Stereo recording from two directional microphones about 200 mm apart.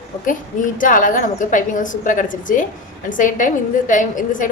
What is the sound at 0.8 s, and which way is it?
A woman's voice, 40° left (ahead or behind).